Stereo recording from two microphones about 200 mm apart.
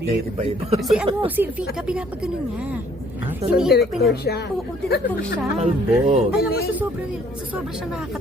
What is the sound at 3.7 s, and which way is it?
Speech, 55° left (ahead or behind).